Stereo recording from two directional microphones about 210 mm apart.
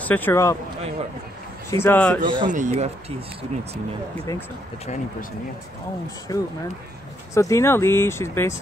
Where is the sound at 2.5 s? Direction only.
35° right (ahead or behind).